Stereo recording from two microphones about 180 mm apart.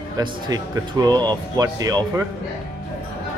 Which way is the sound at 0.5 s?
20° right (ahead or behind).